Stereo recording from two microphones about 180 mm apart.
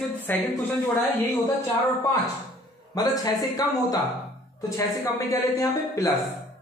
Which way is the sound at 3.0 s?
20° left (ahead or behind).